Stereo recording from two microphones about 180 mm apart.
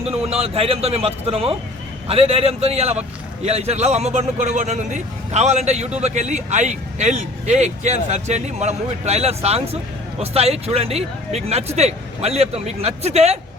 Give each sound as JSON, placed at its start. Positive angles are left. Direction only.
{"t": 0.0, "sound": "speech", "side_deg": -35}